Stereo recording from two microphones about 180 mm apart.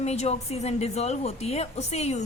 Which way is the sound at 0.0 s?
35° left (ahead or behind).